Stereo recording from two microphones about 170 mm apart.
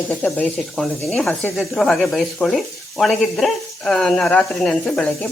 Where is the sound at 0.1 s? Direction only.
5° left (ahead or behind).